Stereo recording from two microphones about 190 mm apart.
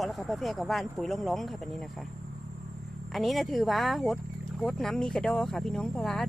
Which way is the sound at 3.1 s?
Centre (ahead or behind).